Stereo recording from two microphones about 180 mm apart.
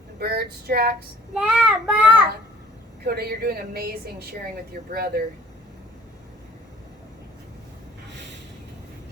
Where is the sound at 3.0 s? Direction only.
60° right (ahead or behind).